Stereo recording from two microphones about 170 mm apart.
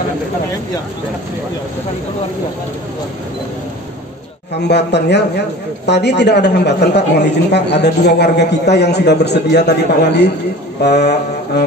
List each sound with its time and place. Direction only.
4.6 s a woman's voice: 85° left
10.8 s mantra: 80° left